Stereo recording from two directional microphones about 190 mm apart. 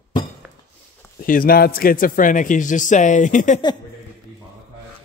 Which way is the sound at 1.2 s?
50° left (ahead or behind).